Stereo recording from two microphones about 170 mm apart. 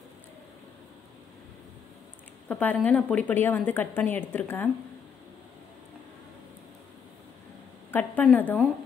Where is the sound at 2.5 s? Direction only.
10° left (ahead or behind).